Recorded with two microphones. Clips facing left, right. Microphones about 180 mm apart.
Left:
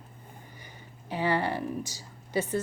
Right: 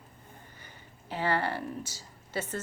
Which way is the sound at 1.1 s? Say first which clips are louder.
Left 2 dB; 15° left (ahead or behind).